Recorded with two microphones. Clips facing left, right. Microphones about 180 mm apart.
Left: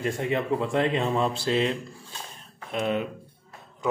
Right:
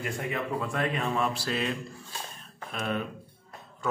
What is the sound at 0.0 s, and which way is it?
Speech, 25° left (ahead or behind).